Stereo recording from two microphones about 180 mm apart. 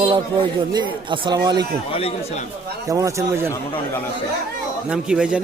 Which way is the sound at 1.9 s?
35° left (ahead or behind).